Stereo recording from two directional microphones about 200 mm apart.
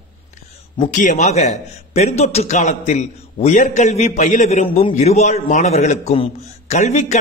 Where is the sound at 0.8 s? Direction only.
40° left (ahead or behind).